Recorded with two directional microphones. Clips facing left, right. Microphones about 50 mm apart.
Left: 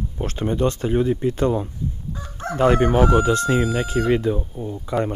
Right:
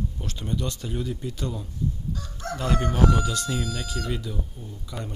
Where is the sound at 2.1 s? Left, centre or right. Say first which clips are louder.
Left 3 dB; left.